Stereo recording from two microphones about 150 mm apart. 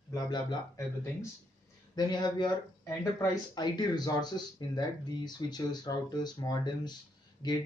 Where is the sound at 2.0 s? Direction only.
30° left (ahead or behind).